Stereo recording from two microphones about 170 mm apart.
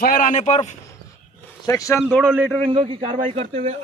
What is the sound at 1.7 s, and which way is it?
Speech, 20° left (ahead or behind).